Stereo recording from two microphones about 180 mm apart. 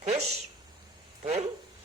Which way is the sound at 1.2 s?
40° right (ahead or behind).